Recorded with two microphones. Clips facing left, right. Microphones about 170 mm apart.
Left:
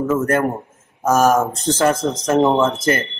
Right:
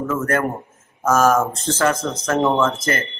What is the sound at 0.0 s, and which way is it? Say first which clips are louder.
Speech: left 3 dB; 15° left (ahead or behind).